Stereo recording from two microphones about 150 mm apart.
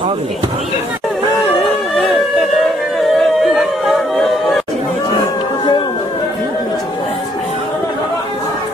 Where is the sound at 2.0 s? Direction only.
Centre (ahead or behind).